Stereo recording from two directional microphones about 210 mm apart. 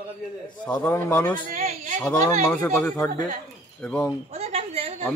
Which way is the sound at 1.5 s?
40° right (ahead or behind).